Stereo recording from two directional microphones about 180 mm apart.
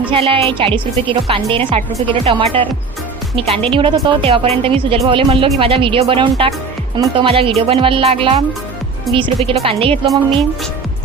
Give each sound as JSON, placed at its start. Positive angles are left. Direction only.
{"t": 0.1, "sound": "a woman's voice", "side_deg": -30}